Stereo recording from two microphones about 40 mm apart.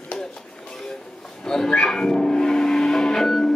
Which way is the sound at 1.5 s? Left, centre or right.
Centre.